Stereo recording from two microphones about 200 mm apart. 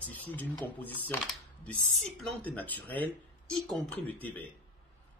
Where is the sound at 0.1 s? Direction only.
10° left (ahead or behind).